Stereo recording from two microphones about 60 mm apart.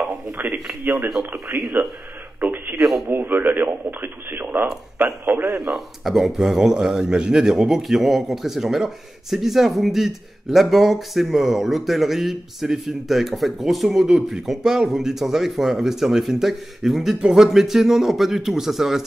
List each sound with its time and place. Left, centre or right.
0.0 s a sound: right
0.8 s speech: right
1.5 s speech: right
2.4 s a sound: right
2.8 s a man's voice: centre
3.1 s speech: right
5.7 s a man's voice: centre